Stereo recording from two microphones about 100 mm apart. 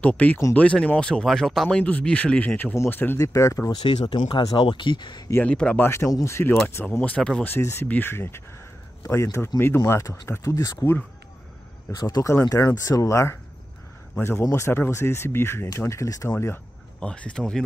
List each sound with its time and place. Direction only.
0.0 s speech: 15° left (ahead or behind)
1.8 s speech: 15° left (ahead or behind); by 3.7 s 30° left (ahead or behind)
4.0 s speech: 50° left (ahead or behind)
4.6 s speech: 55° left (ahead or behind)
5.4 s speech: 10° left (ahead or behind)
5.8 s speech: 25° left (ahead or behind)
7.0 s speech: 10° left (ahead or behind)
7.4 s speech: 25° left (ahead or behind)
11.9 s speech: 40° left (ahead or behind); by 16.6 s 20° left (ahead or behind)
17.0 s speech: 10° left (ahead or behind)